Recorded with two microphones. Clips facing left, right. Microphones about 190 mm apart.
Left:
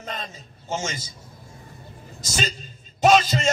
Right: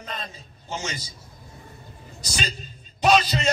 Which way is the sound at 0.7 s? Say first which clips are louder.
Left 3 dB; 45° left (ahead or behind).